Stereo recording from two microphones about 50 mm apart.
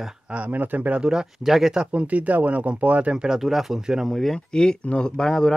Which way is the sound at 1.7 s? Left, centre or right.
Right.